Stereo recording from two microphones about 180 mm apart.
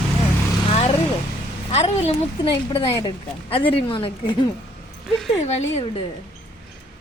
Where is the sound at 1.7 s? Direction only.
35° left (ahead or behind).